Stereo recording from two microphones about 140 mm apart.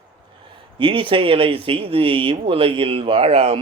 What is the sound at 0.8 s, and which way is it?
Speech, 35° right (ahead or behind).